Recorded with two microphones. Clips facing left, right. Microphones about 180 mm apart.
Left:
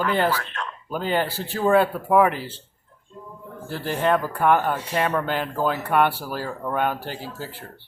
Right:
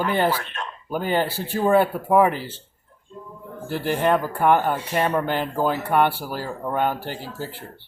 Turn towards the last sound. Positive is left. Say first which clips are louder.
# right 1 dB
turn(degrees=-15)  # may be behind; listen again after turning